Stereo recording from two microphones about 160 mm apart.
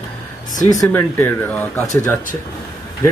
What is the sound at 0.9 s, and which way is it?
Speech, 10° left (ahead or behind).